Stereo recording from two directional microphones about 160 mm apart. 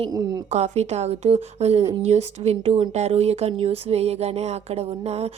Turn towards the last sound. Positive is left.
turn(degrees=-40)  # may be behind; listen again after turning